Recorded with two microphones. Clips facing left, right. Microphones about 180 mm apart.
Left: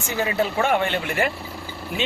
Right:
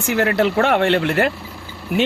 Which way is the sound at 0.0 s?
70° right (ahead or behind).